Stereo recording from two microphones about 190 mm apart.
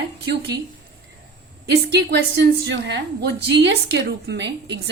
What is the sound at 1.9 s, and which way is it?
A woman's voice, 60° right (ahead or behind).